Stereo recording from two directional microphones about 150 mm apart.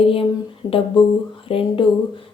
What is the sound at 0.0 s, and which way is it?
Speech, 40° left (ahead or behind).